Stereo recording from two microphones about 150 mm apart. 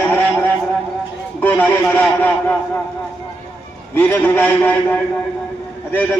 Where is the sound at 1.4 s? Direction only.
10° left (ahead or behind).